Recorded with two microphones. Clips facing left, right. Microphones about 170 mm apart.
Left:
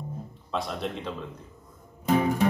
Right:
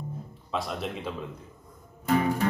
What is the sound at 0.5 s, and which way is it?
Speech, centre (ahead or behind).